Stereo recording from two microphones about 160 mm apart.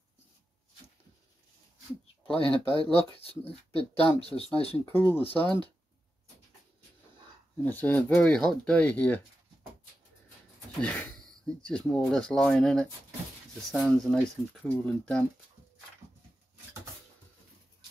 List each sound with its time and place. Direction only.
2.2 s speech: 35° left (ahead or behind)
4.9 s speech: 15° left (ahead or behind)
5.2 s speech: 35° left (ahead or behind)
7.6 s speech: 10° left (ahead or behind)
10.8 s speech: 5° left (ahead or behind)